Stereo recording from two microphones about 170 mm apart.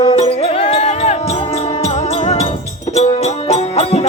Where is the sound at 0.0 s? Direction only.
30° left (ahead or behind).